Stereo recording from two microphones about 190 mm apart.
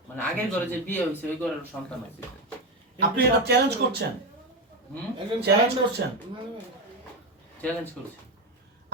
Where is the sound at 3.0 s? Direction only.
60° right (ahead or behind).